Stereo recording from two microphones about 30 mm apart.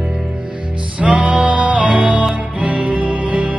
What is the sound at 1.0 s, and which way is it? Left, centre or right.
Music, right.